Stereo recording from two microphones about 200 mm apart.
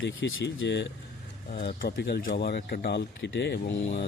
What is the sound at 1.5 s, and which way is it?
Speech, 30° left (ahead or behind).